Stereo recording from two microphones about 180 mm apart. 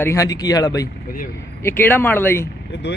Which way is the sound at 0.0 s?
15° left (ahead or behind).